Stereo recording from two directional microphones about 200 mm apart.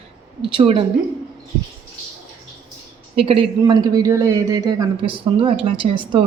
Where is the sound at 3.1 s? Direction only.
30° right (ahead or behind).